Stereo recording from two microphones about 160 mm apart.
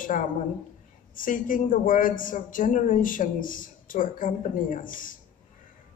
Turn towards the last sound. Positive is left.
turn(degrees=60)  # may be behind; listen again after turning